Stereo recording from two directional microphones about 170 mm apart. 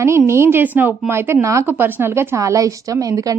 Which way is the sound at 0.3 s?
15° right (ahead or behind).